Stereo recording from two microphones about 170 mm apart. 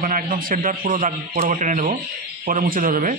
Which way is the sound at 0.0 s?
55° right (ahead or behind).